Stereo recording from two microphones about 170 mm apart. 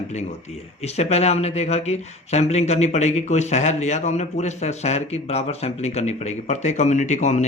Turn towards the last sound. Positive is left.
turn(degrees=45)  # may be behind; listen again after turning